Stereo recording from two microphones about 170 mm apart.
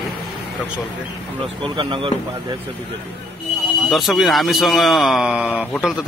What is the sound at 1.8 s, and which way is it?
Speech, 30° right (ahead or behind).